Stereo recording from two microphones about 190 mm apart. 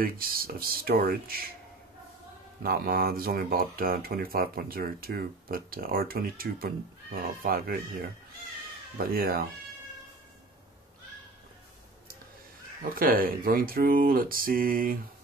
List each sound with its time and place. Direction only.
0.0 s speech: 50° right (ahead or behind)
2.6 s speech: 50° right (ahead or behind)
8.9 s speech: 50° right (ahead or behind)
12.9 s speech: 50° right (ahead or behind)